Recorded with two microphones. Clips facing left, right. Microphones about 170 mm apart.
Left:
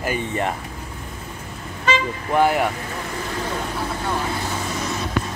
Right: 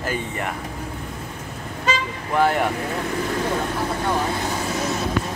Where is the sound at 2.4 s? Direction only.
10° left (ahead or behind).